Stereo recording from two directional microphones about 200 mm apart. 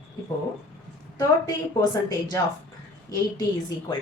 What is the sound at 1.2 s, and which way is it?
Speech, 20° left (ahead or behind).